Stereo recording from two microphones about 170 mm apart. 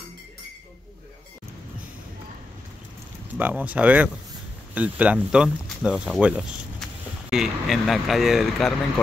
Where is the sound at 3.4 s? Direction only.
10° right (ahead or behind).